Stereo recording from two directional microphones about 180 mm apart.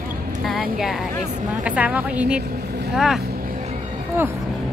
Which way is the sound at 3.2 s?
50° right (ahead or behind).